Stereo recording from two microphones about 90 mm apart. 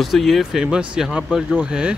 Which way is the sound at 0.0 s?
Centre (ahead or behind).